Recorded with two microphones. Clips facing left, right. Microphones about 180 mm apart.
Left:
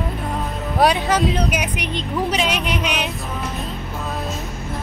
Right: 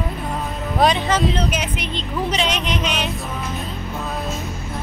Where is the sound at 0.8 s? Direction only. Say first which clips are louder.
Left 1 dB; 10° left (ahead or behind).